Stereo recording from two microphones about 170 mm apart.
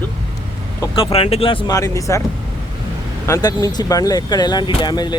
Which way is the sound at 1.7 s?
20° left (ahead or behind).